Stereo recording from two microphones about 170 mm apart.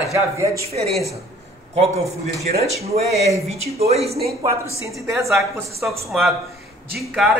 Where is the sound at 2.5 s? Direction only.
50° right (ahead or behind).